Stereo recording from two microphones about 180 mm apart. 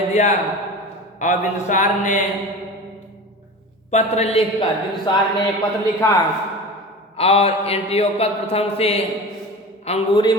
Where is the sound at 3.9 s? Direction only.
35° left (ahead or behind).